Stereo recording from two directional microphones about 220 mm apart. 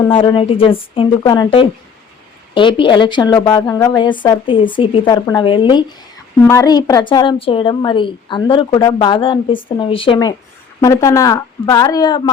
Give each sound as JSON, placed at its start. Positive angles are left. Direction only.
{"t": 0.1, "sound": "a woman's voice", "side_deg": 20}